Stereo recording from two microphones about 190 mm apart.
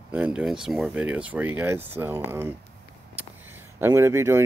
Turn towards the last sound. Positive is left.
turn(degrees=-15)  # may be behind; listen again after turning